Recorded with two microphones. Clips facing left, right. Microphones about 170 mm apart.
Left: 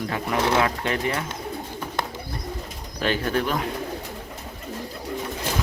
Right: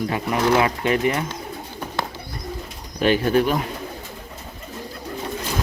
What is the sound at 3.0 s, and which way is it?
Speech, 15° right (ahead or behind).